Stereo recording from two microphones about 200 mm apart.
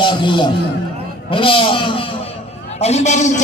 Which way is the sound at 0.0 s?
25° left (ahead or behind).